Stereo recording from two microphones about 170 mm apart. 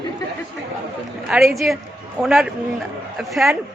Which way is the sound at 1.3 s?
Centre (ahead or behind).